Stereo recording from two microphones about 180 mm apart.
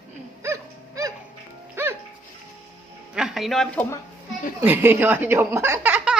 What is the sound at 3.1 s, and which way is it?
Speech, centre (ahead or behind).